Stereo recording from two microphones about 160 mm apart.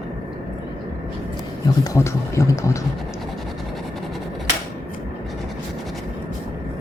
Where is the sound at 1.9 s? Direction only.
20° left (ahead or behind).